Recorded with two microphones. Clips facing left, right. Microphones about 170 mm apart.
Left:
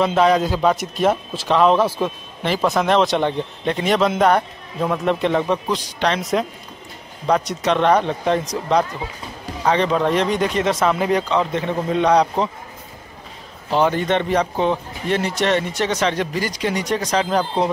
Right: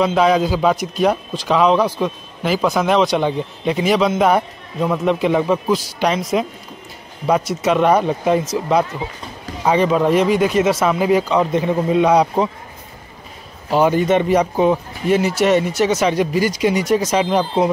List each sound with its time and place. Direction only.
0.0 s a man's voice: centre (ahead or behind)
9.7 s speech: 10° right (ahead or behind)
13.7 s speech: 10° right (ahead or behind)